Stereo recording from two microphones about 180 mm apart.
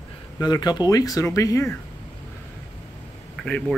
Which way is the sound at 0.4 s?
25° left (ahead or behind).